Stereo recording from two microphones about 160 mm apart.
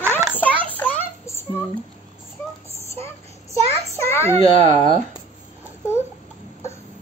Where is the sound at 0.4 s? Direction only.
10° left (ahead or behind).